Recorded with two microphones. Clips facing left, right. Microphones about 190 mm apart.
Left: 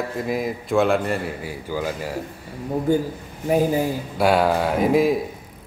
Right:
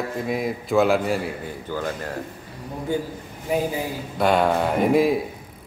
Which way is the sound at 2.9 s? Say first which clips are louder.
Left 5 dB; 45° left (ahead or behind).